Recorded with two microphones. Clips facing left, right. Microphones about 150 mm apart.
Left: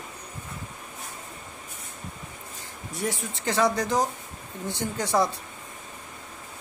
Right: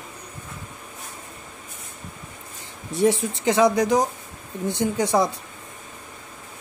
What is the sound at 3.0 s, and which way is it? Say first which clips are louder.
Speech: right 10 dB; 20° right (ahead or behind).